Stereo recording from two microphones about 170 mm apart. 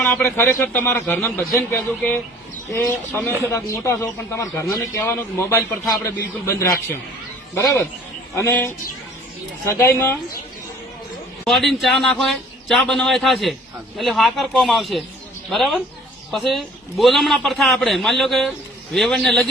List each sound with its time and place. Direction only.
0.0 s speech: 15° left (ahead or behind)
11.4 s a man's voice: centre (ahead or behind)